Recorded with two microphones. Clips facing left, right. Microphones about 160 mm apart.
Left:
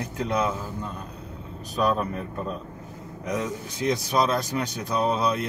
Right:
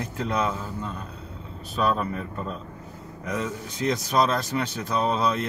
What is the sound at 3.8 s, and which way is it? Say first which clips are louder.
Speech: even; 20° left (ahead or behind).